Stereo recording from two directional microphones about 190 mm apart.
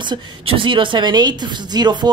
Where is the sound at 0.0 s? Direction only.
25° right (ahead or behind).